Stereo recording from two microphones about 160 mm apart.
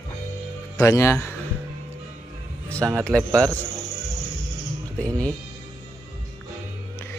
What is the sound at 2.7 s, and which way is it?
Speech, 15° right (ahead or behind).